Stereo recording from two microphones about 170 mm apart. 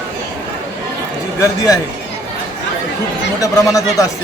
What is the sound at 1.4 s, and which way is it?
Speech, 20° left (ahead or behind).